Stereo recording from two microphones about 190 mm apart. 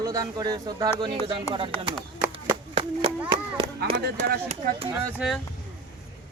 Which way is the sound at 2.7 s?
35° right (ahead or behind).